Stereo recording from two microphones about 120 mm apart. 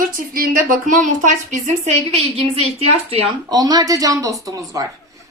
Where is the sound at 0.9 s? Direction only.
90° right; by 3.3 s 55° right (ahead or behind).